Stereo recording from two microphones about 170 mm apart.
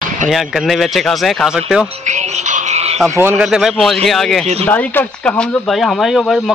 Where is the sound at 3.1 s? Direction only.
15° right (ahead or behind).